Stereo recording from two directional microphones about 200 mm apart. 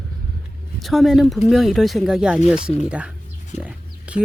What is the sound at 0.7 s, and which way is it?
Speech, centre (ahead or behind).